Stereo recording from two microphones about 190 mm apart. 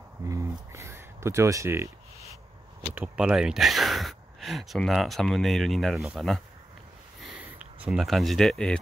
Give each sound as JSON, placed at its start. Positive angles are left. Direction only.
{"t": 0.2, "sound": "speech", "side_deg": -15}
{"t": 2.9, "sound": "speech", "side_deg": -5}
{"t": 7.2, "sound": "a sound", "side_deg": -5}